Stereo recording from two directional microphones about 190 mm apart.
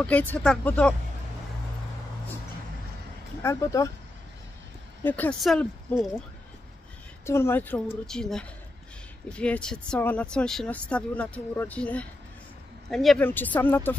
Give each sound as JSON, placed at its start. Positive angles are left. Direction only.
{"t": 0.0, "sound": "speech", "side_deg": 10}
{"t": 3.4, "sound": "speech", "side_deg": 15}
{"t": 5.0, "sound": "speech", "side_deg": 10}
{"t": 7.2, "sound": "speech", "side_deg": 15}